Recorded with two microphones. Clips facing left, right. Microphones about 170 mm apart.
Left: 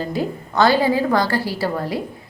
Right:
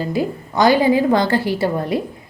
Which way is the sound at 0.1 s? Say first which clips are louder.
Right 2 dB; 15° right (ahead or behind).